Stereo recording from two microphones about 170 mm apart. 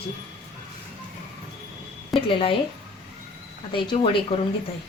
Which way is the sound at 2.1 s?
30° left (ahead or behind).